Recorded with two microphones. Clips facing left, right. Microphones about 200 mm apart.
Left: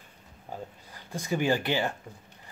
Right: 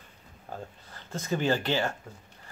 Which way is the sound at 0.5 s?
15° left (ahead or behind).